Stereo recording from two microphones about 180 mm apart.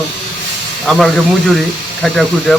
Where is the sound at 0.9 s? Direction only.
Centre (ahead or behind).